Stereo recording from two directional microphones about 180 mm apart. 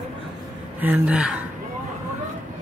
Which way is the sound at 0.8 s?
10° right (ahead or behind).